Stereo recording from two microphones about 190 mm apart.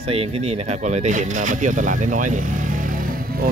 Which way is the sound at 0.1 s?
30° right (ahead or behind).